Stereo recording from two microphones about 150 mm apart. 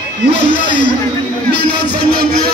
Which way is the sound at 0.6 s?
60° left (ahead or behind).